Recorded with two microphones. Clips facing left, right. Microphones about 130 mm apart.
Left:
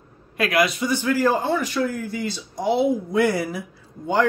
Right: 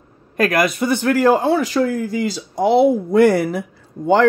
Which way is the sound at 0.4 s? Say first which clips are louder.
Right 4 dB; 50° right (ahead or behind).